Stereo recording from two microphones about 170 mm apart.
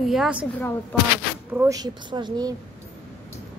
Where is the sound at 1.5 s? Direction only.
20° right (ahead or behind).